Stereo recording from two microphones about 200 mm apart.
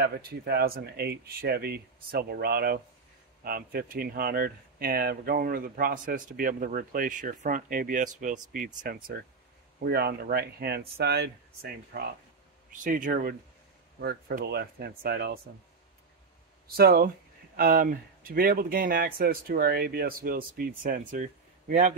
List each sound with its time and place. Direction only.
0.0 s speech: 50° right (ahead or behind)
12.7 s speech: 40° right (ahead or behind)
16.7 s speech: 50° right (ahead or behind)